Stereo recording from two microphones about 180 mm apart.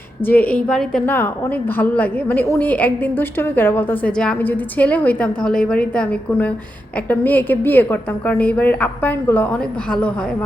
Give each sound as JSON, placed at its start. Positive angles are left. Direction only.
{"t": 0.3, "sound": "a woman's voice", "side_deg": 10}